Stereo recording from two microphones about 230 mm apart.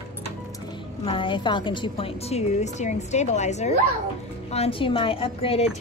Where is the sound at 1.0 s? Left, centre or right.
Left.